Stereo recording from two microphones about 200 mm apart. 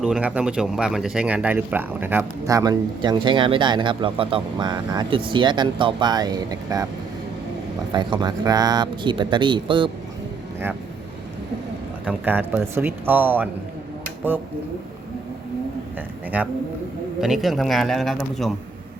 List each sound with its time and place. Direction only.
0.0 s speech: 5° right (ahead or behind)
7.9 s speech: 20° right (ahead or behind)
12.0 s speech: 10° right (ahead or behind)
16.0 s a man's voice: 10° right (ahead or behind)